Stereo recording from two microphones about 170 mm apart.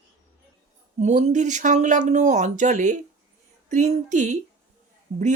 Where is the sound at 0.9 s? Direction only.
45° right (ahead or behind).